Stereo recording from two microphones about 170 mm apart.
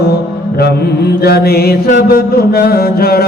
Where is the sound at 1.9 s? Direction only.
60° left (ahead or behind).